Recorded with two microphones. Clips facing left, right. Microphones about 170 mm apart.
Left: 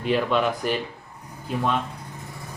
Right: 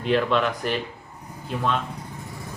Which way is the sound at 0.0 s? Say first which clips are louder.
Even; 5° left (ahead or behind).